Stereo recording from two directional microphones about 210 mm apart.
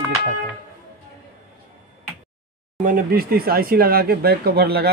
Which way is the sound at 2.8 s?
40° right (ahead or behind).